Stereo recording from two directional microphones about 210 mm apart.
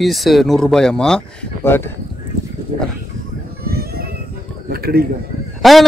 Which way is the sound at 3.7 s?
45° right (ahead or behind).